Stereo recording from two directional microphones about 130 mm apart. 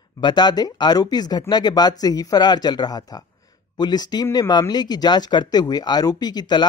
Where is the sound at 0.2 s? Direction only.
35° left (ahead or behind).